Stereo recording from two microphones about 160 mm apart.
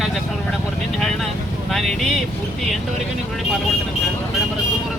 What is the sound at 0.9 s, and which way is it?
Vehicle, centre (ahead or behind).